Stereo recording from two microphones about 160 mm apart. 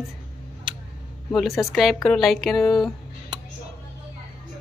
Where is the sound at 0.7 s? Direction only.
30° right (ahead or behind).